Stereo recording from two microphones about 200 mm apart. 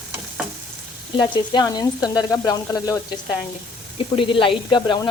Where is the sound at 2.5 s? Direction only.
20° left (ahead or behind).